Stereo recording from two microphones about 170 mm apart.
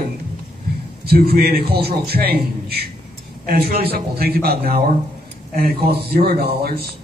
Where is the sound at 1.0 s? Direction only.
65° right (ahead or behind).